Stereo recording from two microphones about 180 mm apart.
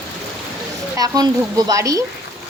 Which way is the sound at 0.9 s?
20° right (ahead or behind).